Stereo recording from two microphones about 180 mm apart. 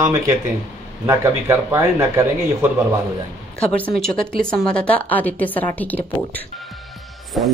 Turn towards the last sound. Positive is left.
turn(degrees=0)  # may be behind; listen again after turning